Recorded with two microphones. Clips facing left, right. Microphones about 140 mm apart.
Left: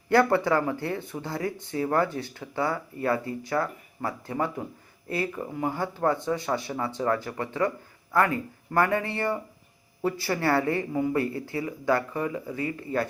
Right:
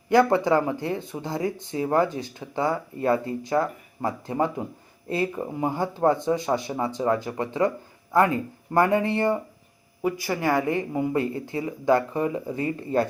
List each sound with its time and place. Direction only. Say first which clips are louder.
0.1 s speech: right 2 dB; 15° right (ahead or behind)